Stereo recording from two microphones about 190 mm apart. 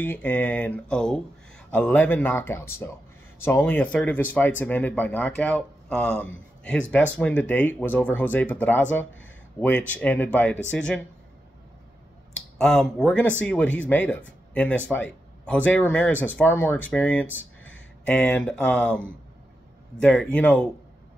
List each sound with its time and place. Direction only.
0.0 s speech: 10° left (ahead or behind)
12.5 s speech: 5° left (ahead or behind)
17.3 s a sound: 85° left
18.0 s speech: 5° left (ahead or behind)